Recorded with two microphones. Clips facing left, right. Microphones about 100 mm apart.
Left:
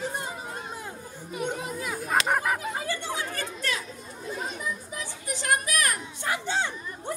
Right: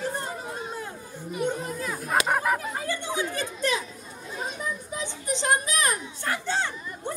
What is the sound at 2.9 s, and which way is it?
Chatter, 20° right (ahead or behind).